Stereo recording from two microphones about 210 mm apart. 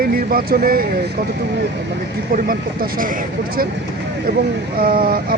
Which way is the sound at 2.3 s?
45° right (ahead or behind).